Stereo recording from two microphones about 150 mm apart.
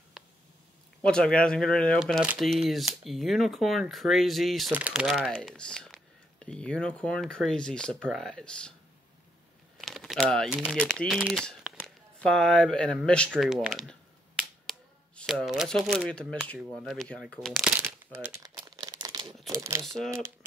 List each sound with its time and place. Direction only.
0.2 s a sound: 5° right (ahead or behind)
1.0 s speech: 5° left (ahead or behind)
9.8 s a sound: centre (ahead or behind)
10.7 s speech: centre (ahead or behind)
13.3 s finger snapping: 5° right (ahead or behind)
16.5 s speech: centre (ahead or behind)
18.3 s crumpling: 25° right (ahead or behind)
19.5 s speech: 20° right (ahead or behind)